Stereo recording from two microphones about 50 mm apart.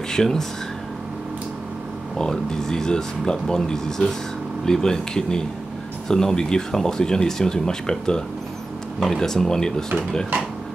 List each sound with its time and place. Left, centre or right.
0.1 s speech: centre
2.1 s speech: centre